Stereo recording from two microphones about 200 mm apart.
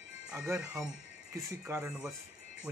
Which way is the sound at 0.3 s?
15° right (ahead or behind).